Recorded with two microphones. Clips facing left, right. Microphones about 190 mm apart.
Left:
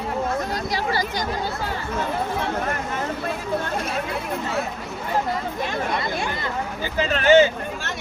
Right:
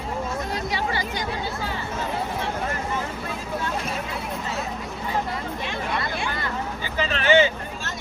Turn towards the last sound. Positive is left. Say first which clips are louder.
# left 4 dB
turn(degrees=45)  # may be behind; listen again after turning